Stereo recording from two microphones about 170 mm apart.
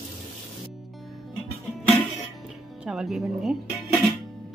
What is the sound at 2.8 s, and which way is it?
Speech, 5° right (ahead or behind).